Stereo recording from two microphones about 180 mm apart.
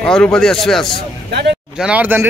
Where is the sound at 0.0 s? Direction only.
5° left (ahead or behind).